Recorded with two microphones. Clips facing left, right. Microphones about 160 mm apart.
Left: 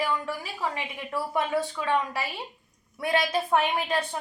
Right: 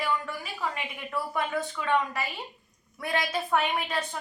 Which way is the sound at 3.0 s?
25° left (ahead or behind).